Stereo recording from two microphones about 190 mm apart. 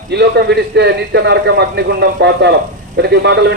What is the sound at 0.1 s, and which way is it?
A man's voice, 60° right (ahead or behind).